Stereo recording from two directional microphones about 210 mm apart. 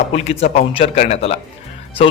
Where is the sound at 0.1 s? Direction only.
30° left (ahead or behind).